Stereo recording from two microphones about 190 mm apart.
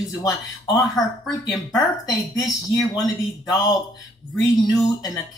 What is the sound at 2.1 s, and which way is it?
A woman's voice, 20° left (ahead or behind).